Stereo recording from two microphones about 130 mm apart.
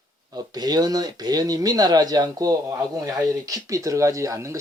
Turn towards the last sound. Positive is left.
turn(degrees=-25)  # may be behind; listen again after turning